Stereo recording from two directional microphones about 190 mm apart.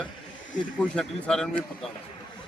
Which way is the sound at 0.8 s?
5° left (ahead or behind).